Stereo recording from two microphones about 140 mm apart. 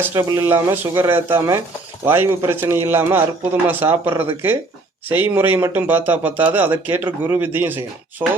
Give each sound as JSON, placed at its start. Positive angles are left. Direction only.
{"t": 0.0, "sound": "speech", "side_deg": -20}